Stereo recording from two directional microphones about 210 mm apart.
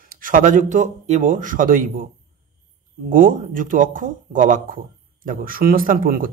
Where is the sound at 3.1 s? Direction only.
40° right (ahead or behind).